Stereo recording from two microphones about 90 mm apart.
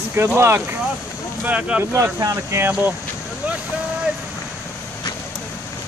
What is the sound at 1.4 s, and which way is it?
Speech, 15° right (ahead or behind).